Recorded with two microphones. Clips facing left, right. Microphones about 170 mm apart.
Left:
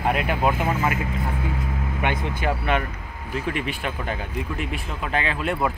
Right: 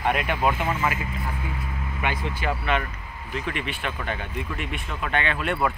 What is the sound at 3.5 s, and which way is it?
Speech, 40° left (ahead or behind).